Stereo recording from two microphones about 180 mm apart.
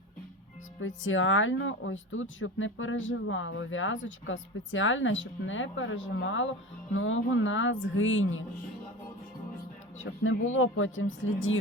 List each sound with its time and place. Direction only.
0.8 s speech: 90° left
10.5 s speech: 90° left